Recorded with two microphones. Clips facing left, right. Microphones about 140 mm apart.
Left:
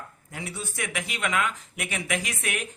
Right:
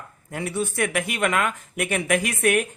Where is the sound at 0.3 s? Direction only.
55° right (ahead or behind).